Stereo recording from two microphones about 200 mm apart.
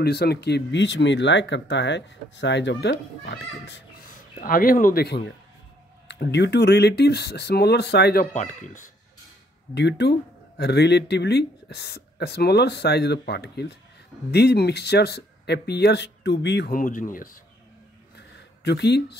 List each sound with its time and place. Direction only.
0.0 s speech: 55° left (ahead or behind)
4.1 s speech: 45° left (ahead or behind)
9.8 s speech: 60° left (ahead or behind); by 17.4 s 45° left (ahead or behind)
18.1 s a sound: 55° left (ahead or behind)